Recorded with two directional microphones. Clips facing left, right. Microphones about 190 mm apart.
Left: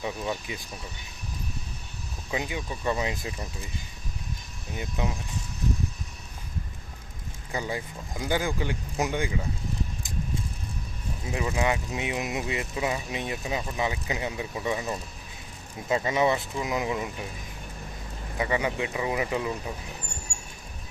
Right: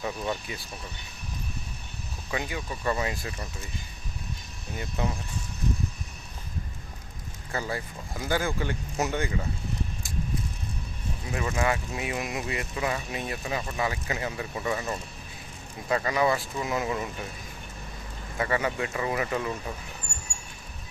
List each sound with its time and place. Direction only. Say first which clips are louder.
0.0 s speech: even; 15° left (ahead or behind)
2.3 s speech: left 1 dB; 15° left (ahead or behind)
4.8 s speech: even; 15° left (ahead or behind)
7.5 s speech: even; 15° left (ahead or behind)
11.3 s speech: left 1 dB; 15° left (ahead or behind)
18.3 s speech: even; 15° left (ahead or behind)